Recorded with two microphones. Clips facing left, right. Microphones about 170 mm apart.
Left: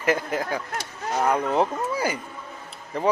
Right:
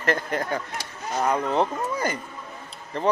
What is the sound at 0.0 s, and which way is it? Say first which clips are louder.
Speech: left 1 dB; 5° left (ahead or behind).